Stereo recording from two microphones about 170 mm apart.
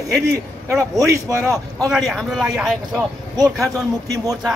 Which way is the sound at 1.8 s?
Centre (ahead or behind).